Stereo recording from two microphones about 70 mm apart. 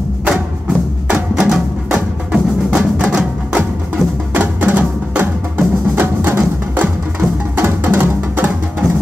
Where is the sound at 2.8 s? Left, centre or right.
Centre.